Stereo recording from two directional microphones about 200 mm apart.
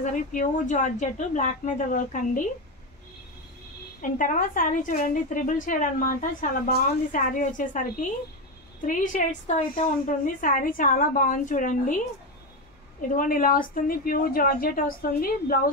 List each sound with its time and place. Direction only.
0.0 s a woman's voice: 40° left (ahead or behind)
4.0 s a woman's voice: 40° left (ahead or behind)
8.8 s a woman's voice: 40° left (ahead or behind)
13.1 s a woman's voice: 45° left (ahead or behind)